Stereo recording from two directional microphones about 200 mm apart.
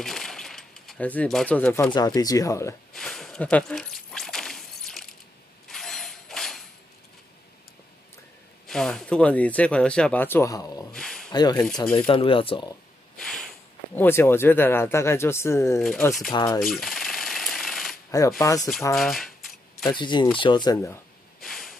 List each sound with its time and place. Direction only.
0.0 s coin: centre (ahead or behind)
1.9 s speech: 20° left (ahead or behind)
2.9 s a sound: centre (ahead or behind)
8.6 s speech: 5° left (ahead or behind)
10.9 s a sound: centre (ahead or behind)
11.3 s speech: 20° left (ahead or behind)
13.2 s speech: 5° left (ahead or behind)
16.3 s speech: 20° left (ahead or behind)
16.5 s jackhammer: centre (ahead or behind)
18.9 s speech: centre (ahead or behind)
19.9 s speech: 25° left (ahead or behind)
21.4 s snort: centre (ahead or behind)